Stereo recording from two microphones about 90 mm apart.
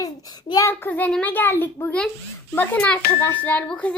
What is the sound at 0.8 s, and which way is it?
A child's voice, 20° left (ahead or behind).